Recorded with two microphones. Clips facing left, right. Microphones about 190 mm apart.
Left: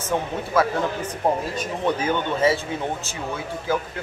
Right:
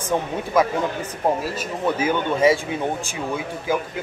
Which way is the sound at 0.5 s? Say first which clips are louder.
Right 1 dB; 15° right (ahead or behind).